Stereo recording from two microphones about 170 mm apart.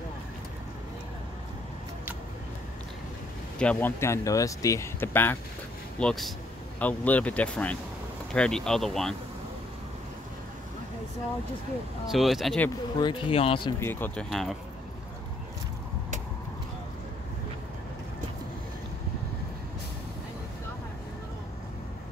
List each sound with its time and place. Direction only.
3.5 s speech: 10° left (ahead or behind)
12.1 s speech: centre (ahead or behind)
13.0 s speech: 30° left (ahead or behind)
13.7 s speech: 15° left (ahead or behind)